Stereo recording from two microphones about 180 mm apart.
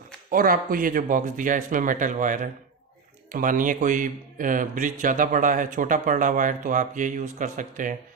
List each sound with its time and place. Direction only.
0.3 s a man's voice: 50° right (ahead or behind)